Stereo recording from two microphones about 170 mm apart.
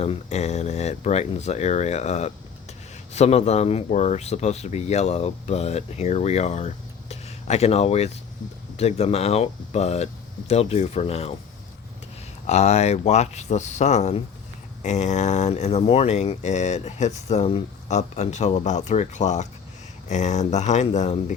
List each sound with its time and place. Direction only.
0.0 s speech: 40° left (ahead or behind)
12.5 s speech: 40° left (ahead or behind)